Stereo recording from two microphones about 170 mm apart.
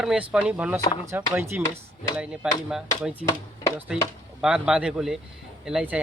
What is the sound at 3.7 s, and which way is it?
A man's voice, 10° right (ahead or behind).